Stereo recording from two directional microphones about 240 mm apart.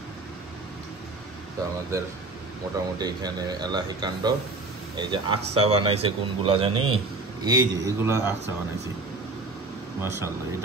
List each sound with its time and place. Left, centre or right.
1.9 s speech: centre
10.0 s speech: centre